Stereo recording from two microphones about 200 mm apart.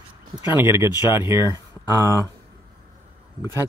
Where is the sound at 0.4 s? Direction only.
10° right (ahead or behind).